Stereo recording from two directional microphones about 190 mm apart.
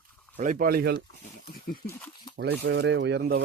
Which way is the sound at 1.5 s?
50° left (ahead or behind).